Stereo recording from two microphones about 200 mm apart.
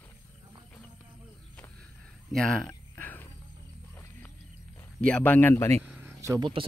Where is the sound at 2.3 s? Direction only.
Centre (ahead or behind).